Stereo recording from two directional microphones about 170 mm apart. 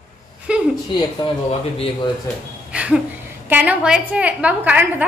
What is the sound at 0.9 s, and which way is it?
Speech, 30° left (ahead or behind).